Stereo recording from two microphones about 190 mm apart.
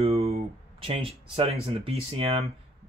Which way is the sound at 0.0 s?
35° right (ahead or behind).